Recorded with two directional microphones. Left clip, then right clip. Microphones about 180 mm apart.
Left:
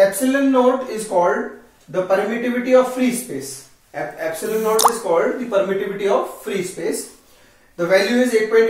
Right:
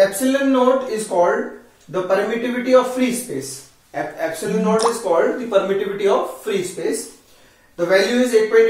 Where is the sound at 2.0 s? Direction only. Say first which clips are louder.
Even; 10° right (ahead or behind).